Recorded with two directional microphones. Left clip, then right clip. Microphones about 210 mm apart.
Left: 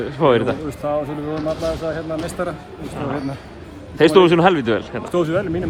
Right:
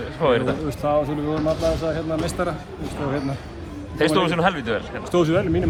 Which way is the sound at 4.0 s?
35° left (ahead or behind).